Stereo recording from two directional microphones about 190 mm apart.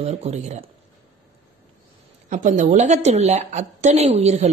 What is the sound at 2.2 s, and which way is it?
Speech, 40° right (ahead or behind).